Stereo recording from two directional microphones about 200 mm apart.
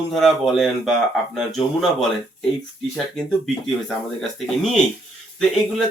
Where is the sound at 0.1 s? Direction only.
Centre (ahead or behind).